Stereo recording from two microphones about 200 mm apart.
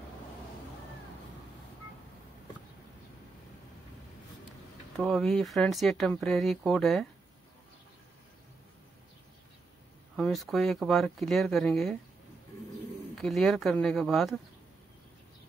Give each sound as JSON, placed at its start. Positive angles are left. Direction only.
{"t": 4.9, "sound": "speech", "side_deg": 0}
{"t": 10.1, "sound": "speech", "side_deg": 0}
{"t": 13.2, "sound": "speech", "side_deg": 0}